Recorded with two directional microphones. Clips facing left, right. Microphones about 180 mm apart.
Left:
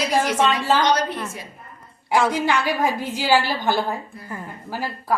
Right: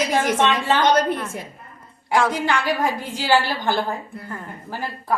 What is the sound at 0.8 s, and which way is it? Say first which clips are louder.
Speech: right 2 dB; 55° right (ahead or behind).